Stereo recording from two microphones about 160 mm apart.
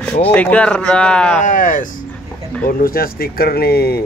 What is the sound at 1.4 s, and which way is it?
Speech, 55° left (ahead or behind).